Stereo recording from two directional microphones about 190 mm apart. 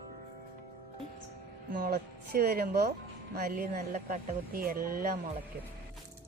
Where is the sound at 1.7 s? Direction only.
50° right (ahead or behind).